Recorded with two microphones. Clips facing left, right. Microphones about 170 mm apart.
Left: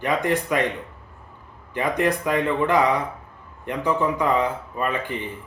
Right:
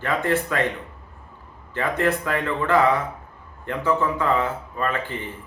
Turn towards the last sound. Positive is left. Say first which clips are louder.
# left 1 dB
turn(degrees=15)  # may be behind; listen again after turning